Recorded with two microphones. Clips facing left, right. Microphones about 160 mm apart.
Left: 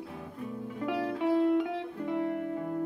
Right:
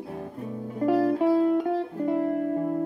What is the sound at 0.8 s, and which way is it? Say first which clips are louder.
Music: right 9 dB; 40° right (ahead or behind).